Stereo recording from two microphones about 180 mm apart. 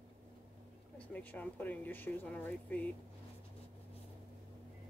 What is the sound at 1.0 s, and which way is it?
Speech, 10° left (ahead or behind).